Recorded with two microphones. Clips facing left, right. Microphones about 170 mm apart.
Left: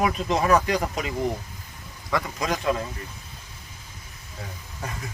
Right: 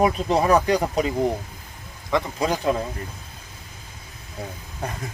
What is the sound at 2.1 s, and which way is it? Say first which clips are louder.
Speech: right 4 dB; 30° right (ahead or behind).